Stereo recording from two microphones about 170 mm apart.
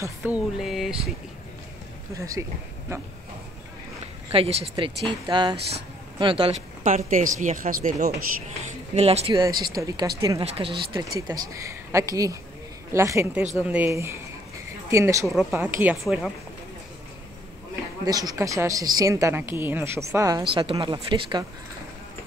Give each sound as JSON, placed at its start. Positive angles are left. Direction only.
{"t": 0.0, "sound": "speech", "side_deg": -10}
{"t": 2.1, "sound": "a woman's voice", "side_deg": -20}
{"t": 4.3, "sound": "a woman's voice", "side_deg": -35}
{"t": 8.9, "sound": "speech", "side_deg": -40}
{"t": 9.8, "sound": "a woman's voice", "side_deg": -20}
{"t": 11.1, "sound": "a woman's voice", "side_deg": -20}
{"t": 18.0, "sound": "a woman's voice", "side_deg": -20}